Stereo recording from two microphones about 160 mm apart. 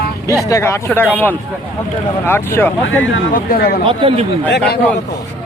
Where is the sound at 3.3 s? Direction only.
70° left (ahead or behind).